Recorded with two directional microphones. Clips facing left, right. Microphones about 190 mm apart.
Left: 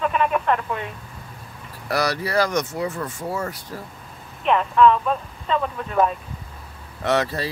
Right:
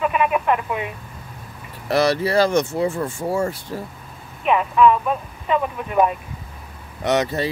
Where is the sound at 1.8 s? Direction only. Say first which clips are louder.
Right 5 dB; 25° right (ahead or behind).